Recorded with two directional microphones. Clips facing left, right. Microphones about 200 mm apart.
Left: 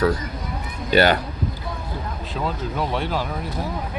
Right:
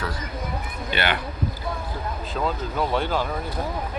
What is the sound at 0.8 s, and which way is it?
Speech, 40° left (ahead or behind).